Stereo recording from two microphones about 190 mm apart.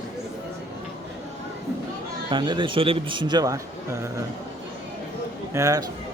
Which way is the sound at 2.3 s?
25° right (ahead or behind).